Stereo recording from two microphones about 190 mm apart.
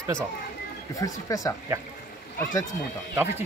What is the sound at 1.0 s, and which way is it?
Speech, 20° left (ahead or behind).